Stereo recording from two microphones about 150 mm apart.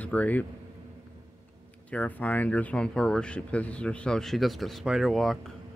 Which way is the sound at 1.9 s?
10° left (ahead or behind).